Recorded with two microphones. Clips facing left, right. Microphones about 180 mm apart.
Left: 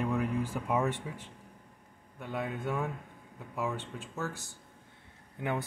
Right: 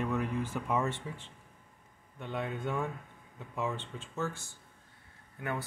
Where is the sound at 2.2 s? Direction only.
10° left (ahead or behind).